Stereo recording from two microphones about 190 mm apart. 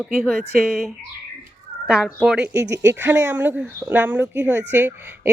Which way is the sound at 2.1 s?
5° right (ahead or behind).